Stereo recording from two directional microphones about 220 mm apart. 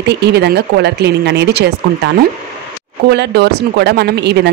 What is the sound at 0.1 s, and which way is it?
Speech, 50° right (ahead or behind).